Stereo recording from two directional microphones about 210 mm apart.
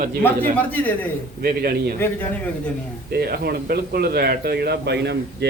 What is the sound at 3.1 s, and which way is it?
Speech, 45° right (ahead or behind).